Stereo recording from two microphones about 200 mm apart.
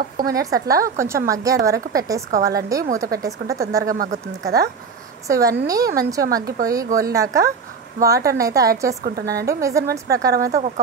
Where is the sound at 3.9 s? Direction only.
45° right (ahead or behind).